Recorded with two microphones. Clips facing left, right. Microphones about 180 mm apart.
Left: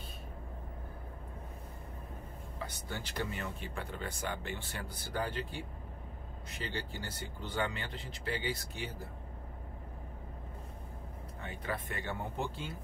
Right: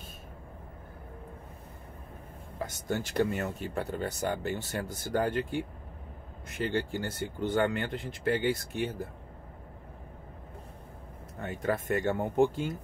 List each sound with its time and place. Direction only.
2.6 s speech: 45° right (ahead or behind)
11.3 s speech: 45° right (ahead or behind)